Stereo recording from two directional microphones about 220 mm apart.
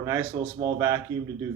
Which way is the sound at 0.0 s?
15° right (ahead or behind).